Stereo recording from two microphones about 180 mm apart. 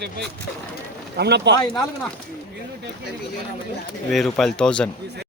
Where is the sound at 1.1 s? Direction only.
70° right (ahead or behind).